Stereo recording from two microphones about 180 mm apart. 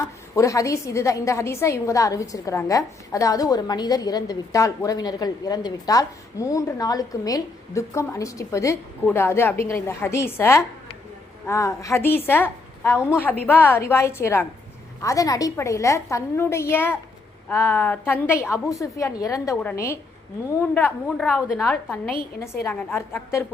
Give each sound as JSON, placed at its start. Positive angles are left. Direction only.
{"t": 0.3, "sound": "a woman's voice", "side_deg": 15}
{"t": 22.4, "sound": "a woman's voice", "side_deg": 15}